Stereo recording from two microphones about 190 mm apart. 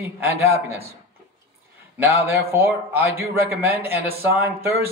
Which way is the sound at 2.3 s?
15° right (ahead or behind).